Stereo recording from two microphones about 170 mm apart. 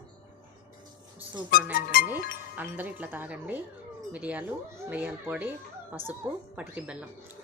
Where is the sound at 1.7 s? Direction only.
55° left (ahead or behind).